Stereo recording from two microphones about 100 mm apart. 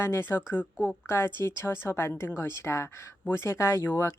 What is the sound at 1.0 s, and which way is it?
A woman's voice, 25° left (ahead or behind).